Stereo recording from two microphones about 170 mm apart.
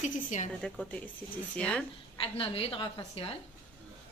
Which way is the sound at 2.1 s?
30° left (ahead or behind).